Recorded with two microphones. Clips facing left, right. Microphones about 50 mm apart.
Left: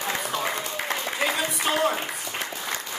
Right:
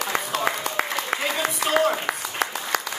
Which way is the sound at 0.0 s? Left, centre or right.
Right.